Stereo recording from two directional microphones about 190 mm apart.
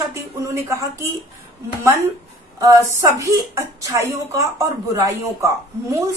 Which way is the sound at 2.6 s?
15° right (ahead or behind).